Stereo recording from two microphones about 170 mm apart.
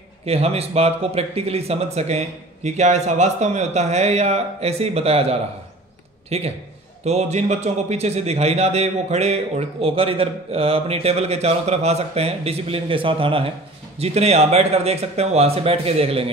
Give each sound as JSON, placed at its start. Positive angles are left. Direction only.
{"t": 0.2, "sound": "a man's voice", "side_deg": -35}